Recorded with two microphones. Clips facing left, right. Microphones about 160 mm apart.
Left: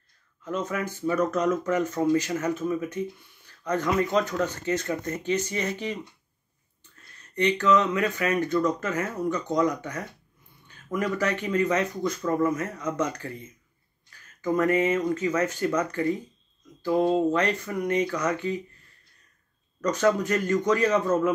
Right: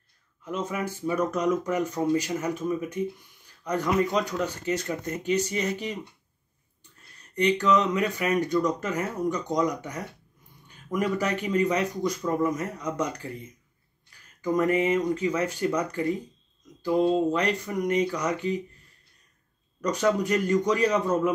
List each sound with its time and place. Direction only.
0.5 s speech: 10° right (ahead or behind)
7.4 s speech: 10° right (ahead or behind)
14.6 s speech: 15° right (ahead or behind)
17.3 s speech: 15° right (ahead or behind)
19.8 s speech: 15° right (ahead or behind)